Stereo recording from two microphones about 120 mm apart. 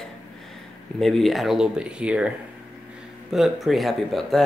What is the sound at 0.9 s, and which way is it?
Speech, centre (ahead or behind).